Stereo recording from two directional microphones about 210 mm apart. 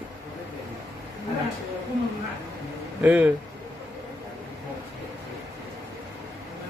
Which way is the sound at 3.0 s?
5° right (ahead or behind).